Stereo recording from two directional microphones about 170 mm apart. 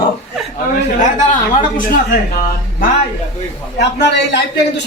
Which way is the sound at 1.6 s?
50° left (ahead or behind).